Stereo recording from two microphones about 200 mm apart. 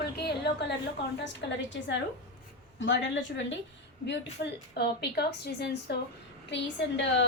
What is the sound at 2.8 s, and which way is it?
A woman's voice, 65° left (ahead or behind).